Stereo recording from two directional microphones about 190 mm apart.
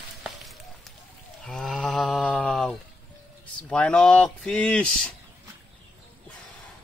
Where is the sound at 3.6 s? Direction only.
5° left (ahead or behind).